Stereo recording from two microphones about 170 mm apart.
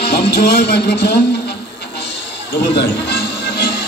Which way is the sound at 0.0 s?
70° left (ahead or behind).